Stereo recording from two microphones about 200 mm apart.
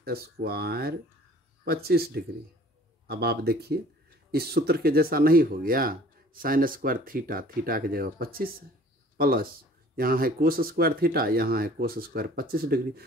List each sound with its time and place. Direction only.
0.0 s speech: 50° right (ahead or behind)